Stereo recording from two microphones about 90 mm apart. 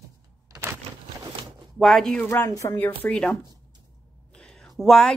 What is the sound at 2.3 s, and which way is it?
Speech, 30° left (ahead or behind).